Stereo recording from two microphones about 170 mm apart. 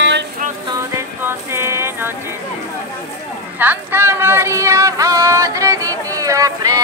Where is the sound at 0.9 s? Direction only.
15° right (ahead or behind).